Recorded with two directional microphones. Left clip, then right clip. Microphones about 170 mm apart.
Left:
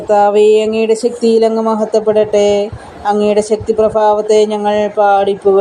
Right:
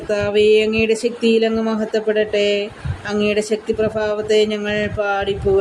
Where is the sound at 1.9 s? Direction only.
Centre (ahead or behind).